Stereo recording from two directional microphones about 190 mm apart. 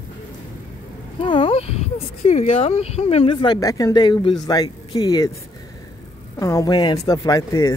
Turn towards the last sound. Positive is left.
turn(degrees=15)  # may be behind; listen again after turning